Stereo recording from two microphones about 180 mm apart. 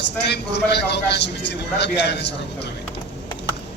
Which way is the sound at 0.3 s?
70° left (ahead or behind).